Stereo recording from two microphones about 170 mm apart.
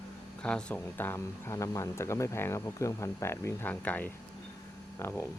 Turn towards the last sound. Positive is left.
turn(degrees=15)  # may be behind; listen again after turning